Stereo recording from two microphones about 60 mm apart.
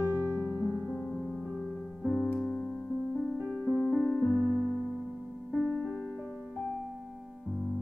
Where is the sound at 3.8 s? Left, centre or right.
Centre.